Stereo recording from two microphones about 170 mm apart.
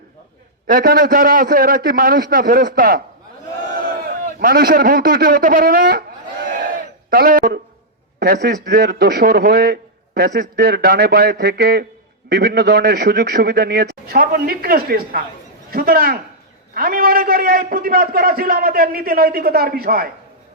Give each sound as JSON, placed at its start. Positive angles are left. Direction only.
{"t": 0.7, "sound": "a man's voice", "side_deg": -65}
{"t": 4.0, "sound": "speech", "side_deg": -60}
{"t": 6.5, "sound": "a sound", "side_deg": -55}
{"t": 8.2, "sound": "a man's voice", "side_deg": -75}